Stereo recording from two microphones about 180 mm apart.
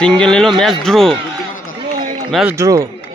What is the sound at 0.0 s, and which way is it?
A man's voice, 5° left (ahead or behind).